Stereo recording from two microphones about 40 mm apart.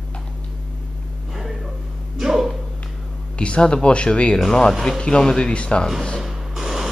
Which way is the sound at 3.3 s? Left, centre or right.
Left.